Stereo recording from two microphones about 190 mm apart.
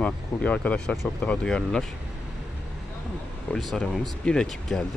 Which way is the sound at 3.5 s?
5° left (ahead or behind).